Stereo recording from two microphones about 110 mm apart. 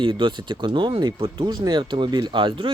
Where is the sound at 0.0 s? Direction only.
45° right (ahead or behind).